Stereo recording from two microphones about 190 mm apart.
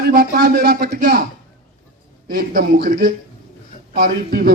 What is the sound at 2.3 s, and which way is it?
Speech, 55° right (ahead or behind).